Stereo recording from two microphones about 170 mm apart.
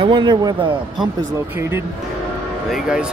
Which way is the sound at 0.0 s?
25° right (ahead or behind).